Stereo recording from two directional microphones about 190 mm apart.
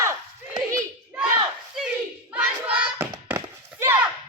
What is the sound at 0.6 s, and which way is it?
Clapping, 15° right (ahead or behind).